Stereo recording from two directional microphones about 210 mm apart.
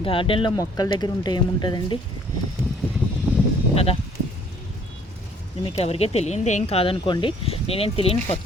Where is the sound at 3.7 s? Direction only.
30° left (ahead or behind).